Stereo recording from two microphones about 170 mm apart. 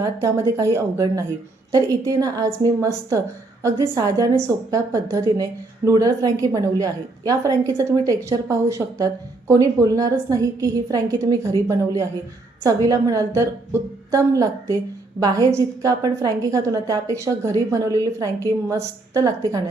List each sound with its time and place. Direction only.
0.0 s a woman's voice: 20° right (ahead or behind)
12.6 s a woman's voice: 20° right (ahead or behind)